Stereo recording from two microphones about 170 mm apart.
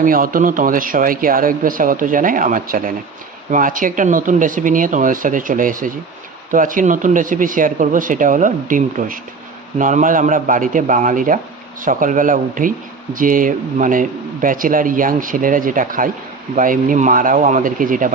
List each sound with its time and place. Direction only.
0.0 s speech: 55° right (ahead or behind)